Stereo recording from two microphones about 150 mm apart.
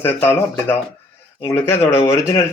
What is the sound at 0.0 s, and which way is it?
Speech, 15° left (ahead or behind).